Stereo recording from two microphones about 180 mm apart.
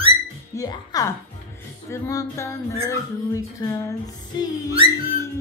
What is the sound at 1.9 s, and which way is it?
Music, 15° left (ahead or behind).